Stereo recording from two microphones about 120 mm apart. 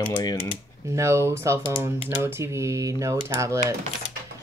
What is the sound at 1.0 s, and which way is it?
Speech, 25° right (ahead or behind).